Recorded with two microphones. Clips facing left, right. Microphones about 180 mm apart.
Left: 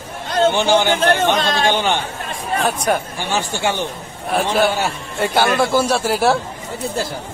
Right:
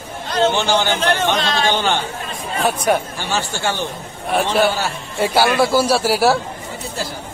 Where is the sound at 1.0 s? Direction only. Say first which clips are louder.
Left 2 dB; 50° left (ahead or behind).